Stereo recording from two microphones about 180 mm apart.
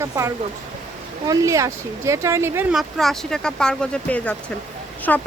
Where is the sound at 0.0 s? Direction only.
15° right (ahead or behind).